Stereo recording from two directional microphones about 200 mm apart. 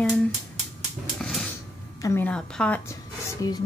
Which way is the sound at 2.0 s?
10° left (ahead or behind).